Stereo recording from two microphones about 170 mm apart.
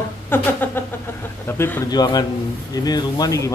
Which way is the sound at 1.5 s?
15° left (ahead or behind).